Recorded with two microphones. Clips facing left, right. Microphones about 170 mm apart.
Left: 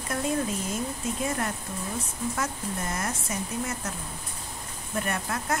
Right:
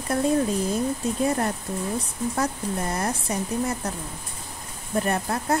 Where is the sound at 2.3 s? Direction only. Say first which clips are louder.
Right 7 dB; 35° right (ahead or behind).